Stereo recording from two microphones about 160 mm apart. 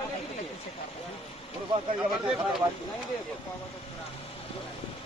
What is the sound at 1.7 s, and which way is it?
Speech, 30° right (ahead or behind).